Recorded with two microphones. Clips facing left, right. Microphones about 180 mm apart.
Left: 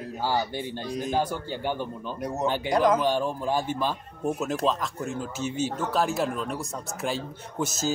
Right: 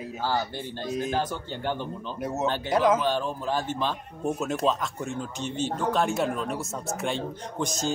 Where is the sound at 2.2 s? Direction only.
5° right (ahead or behind).